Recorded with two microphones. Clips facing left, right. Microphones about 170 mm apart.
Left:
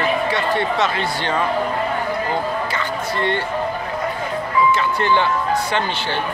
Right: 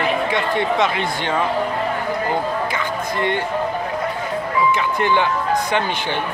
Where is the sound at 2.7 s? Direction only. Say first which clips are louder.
Even; 15° right (ahead or behind).